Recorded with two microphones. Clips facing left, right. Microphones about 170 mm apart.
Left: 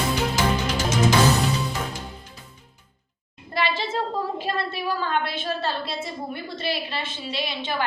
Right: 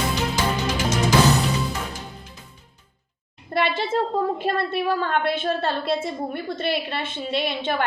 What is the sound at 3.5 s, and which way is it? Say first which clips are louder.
A woman's voice: right 3 dB; 55° right (ahead or behind).